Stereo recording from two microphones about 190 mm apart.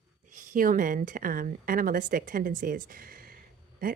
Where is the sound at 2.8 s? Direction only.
50° right (ahead or behind).